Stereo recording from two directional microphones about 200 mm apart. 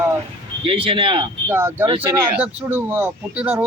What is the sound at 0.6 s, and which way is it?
Speech, 25° right (ahead or behind).